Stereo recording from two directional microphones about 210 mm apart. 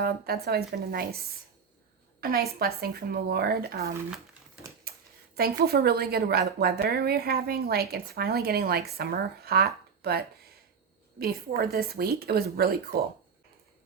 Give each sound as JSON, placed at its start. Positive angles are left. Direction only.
{"t": 0.0, "sound": "a woman's voice", "side_deg": -45}
{"t": 2.2, "sound": "a woman's voice", "side_deg": -45}
{"t": 4.9, "sound": "a sound", "side_deg": -45}
{"t": 5.4, "sound": "a woman's voice", "side_deg": -50}